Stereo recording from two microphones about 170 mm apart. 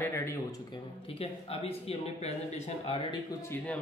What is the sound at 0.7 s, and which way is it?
Speech, 35° left (ahead or behind).